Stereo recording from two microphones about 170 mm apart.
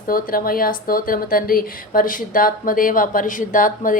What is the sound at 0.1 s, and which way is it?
Speech, 60° left (ahead or behind).